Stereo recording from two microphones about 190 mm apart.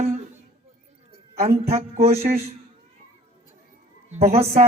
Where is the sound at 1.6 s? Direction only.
35° right (ahead or behind).